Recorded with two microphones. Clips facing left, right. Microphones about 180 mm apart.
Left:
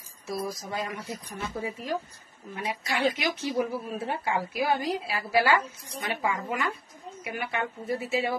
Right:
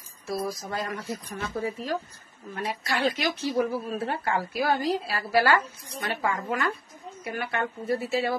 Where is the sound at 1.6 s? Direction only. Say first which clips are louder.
Right 2 dB; 15° left (ahead or behind).